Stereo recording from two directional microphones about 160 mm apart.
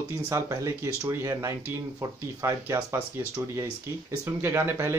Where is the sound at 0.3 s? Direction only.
20° right (ahead or behind).